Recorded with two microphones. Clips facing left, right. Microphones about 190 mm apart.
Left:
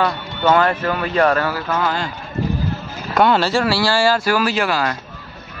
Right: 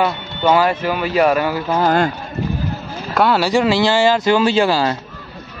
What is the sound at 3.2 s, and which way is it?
Speech, 5° right (ahead or behind).